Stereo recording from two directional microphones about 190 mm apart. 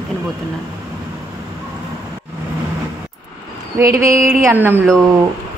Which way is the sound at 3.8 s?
15° right (ahead or behind).